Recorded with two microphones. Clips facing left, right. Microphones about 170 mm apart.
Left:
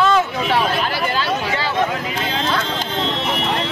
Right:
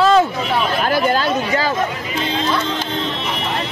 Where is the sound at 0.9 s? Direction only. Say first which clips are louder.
Right 4 dB; 45° right (ahead or behind).